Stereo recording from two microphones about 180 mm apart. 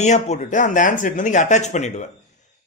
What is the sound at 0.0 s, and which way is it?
A man's voice, 40° left (ahead or behind).